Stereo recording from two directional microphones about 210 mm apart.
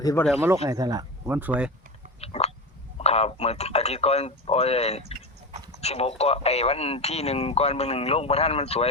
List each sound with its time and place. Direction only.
0.0 s speech: 15° left (ahead or behind)
0.4 s speech: 15° right (ahead or behind)
2.2 s speech: 30° left (ahead or behind)